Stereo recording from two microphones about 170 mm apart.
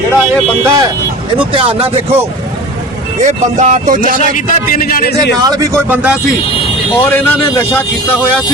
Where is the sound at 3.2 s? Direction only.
45° right (ahead or behind).